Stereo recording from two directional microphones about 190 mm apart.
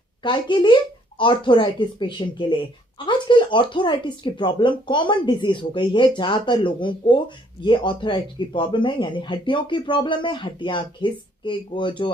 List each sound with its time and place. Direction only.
0.2 s speech: 25° left (ahead or behind)